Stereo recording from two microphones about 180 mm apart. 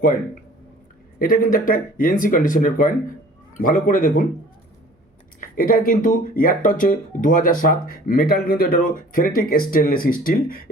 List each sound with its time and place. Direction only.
1.2 s speech: 50° left (ahead or behind)
5.4 s speech: 50° left (ahead or behind)